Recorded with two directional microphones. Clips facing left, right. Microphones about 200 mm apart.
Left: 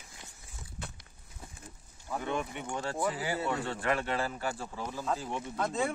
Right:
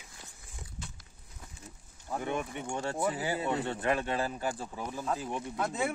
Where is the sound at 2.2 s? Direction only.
20° right (ahead or behind).